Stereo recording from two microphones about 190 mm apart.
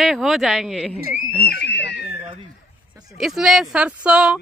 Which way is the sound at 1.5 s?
65° left (ahead or behind).